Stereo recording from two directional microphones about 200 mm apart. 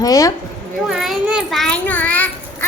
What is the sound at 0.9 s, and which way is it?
Children playing, centre (ahead or behind).